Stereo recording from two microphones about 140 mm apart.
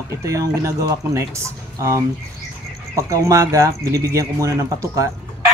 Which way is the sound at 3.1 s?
25° right (ahead or behind).